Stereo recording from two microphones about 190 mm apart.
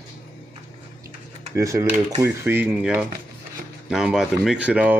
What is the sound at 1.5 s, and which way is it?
Speech, 15° right (ahead or behind).